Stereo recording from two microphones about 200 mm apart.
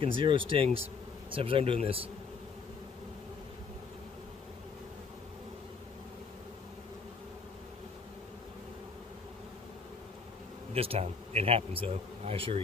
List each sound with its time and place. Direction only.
0.0 s speech: 25° right (ahead or behind)
10.7 s speech: 30° right (ahead or behind)